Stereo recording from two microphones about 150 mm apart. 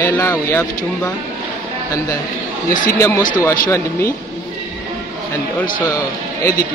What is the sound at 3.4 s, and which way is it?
Speech, 20° left (ahead or behind).